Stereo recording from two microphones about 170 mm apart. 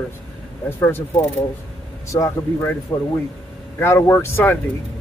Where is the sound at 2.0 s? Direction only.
20° left (ahead or behind).